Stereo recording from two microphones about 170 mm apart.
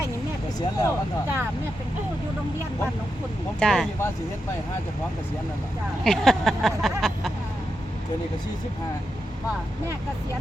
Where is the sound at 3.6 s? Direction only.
5° left (ahead or behind).